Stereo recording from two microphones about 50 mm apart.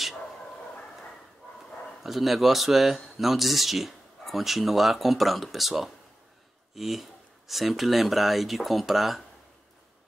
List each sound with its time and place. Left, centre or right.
2.0 s a man's voice: centre